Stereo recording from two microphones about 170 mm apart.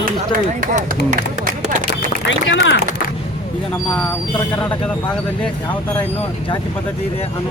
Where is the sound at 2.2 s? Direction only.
90° left.